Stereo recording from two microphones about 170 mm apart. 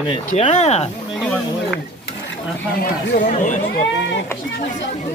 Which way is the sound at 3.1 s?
50° left (ahead or behind).